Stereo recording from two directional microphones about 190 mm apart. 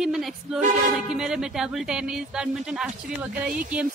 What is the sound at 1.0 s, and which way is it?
A woman's voice, 5° right (ahead or behind).